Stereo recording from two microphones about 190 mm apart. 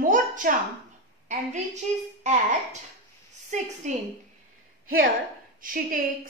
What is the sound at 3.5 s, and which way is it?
Speech, 40° right (ahead or behind).